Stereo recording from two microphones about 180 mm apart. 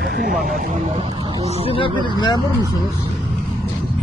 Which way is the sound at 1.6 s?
30° left (ahead or behind).